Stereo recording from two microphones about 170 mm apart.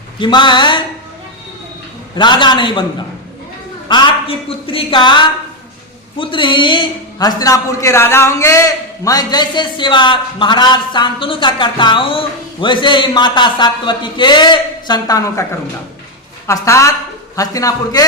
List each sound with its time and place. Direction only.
0.2 s a man's voice: 25° left (ahead or behind)
2.1 s a man's voice: 25° left (ahead or behind)
3.8 s a man's voice: 25° left (ahead or behind)
16.5 s a woman's voice: 15° left (ahead or behind)